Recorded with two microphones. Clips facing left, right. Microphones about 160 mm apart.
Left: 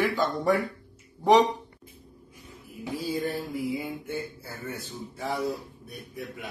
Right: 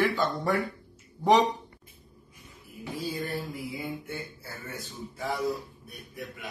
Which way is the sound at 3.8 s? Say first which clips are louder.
Left 2 dB; 10° left (ahead or behind).